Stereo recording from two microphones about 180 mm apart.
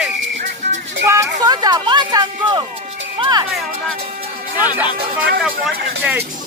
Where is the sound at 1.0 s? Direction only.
15° right (ahead or behind).